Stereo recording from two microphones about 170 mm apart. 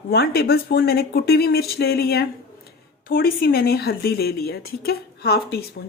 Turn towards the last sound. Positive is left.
turn(degrees=70)  # may be behind; listen again after turning